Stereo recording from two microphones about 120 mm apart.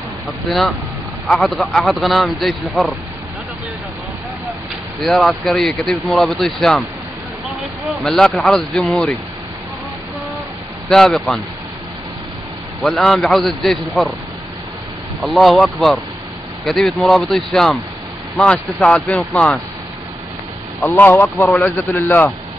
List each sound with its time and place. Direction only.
0.5 s speech: centre (ahead or behind)
5.0 s speech: centre (ahead or behind)
7.8 s speech: 5° left (ahead or behind)
10.9 s speech: 5° left (ahead or behind)
12.8 s speech: 5° left (ahead or behind)
15.2 s speech: centre (ahead or behind)
20.8 s speech: 15° left (ahead or behind)